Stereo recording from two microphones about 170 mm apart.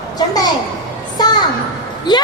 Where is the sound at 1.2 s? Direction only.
25° left (ahead or behind).